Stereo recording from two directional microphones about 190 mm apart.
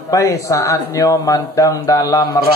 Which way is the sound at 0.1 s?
15° left (ahead or behind).